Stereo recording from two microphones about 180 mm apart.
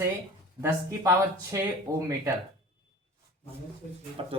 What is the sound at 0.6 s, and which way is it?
Speech, 15° right (ahead or behind).